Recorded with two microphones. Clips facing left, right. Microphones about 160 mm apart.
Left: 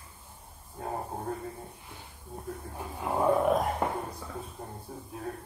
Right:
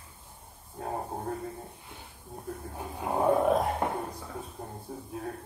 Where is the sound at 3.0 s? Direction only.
20° right (ahead or behind).